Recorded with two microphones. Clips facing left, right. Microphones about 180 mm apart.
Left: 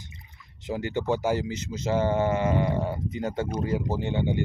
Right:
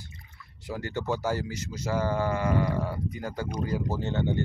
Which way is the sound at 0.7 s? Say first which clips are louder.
Left 4 dB; 20° left (ahead or behind).